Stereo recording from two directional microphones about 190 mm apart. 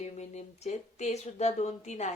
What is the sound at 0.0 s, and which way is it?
Speech, 35° left (ahead or behind).